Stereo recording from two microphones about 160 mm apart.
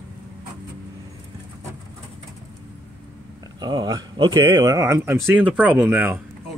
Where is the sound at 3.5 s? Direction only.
25° right (ahead or behind); by 6.2 s 10° right (ahead or behind).